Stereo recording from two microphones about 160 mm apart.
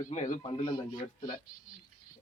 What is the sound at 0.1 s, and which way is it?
Speech, 50° left (ahead or behind).